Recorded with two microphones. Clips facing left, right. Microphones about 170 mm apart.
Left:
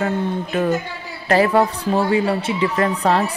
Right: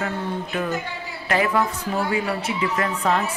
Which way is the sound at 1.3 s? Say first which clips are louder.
Left 6 dB; 35° left (ahead or behind).